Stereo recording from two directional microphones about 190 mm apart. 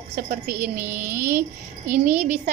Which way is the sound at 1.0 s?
10° right (ahead or behind).